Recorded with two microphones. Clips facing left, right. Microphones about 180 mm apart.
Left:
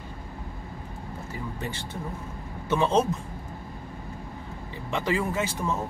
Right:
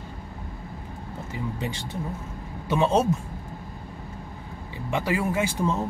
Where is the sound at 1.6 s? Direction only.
15° right (ahead or behind).